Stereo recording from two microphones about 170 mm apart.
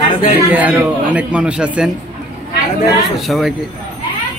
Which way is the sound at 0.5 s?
10° right (ahead or behind).